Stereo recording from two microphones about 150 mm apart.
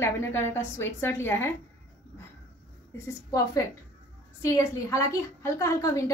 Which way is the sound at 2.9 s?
20° left (ahead or behind).